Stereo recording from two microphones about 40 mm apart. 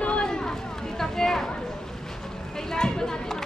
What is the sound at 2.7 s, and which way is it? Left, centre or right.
Speech, centre.